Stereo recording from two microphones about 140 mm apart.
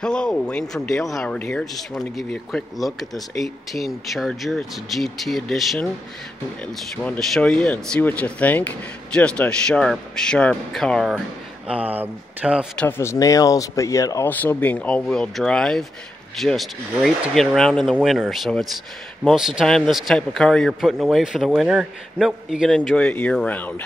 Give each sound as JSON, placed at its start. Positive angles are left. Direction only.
{"t": 0.0, "sound": "speech", "side_deg": 5}
{"t": 7.0, "sound": "speech", "side_deg": 5}
{"t": 12.7, "sound": "speech", "side_deg": 15}
{"t": 14.3, "sound": "speech", "side_deg": 10}
{"t": 22.9, "sound": "speech", "side_deg": 10}